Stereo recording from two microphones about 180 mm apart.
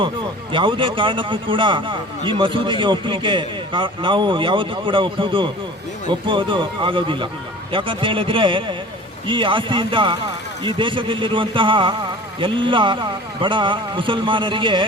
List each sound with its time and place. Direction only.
0.5 s a man's voice: 25° right (ahead or behind)